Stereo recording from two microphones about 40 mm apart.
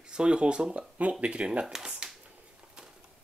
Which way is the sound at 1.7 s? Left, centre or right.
Centre.